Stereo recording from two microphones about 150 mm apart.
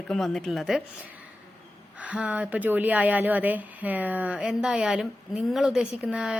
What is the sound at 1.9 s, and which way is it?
A woman's voice, 10° right (ahead or behind).